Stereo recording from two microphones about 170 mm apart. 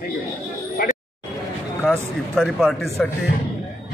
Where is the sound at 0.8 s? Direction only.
60° left (ahead or behind).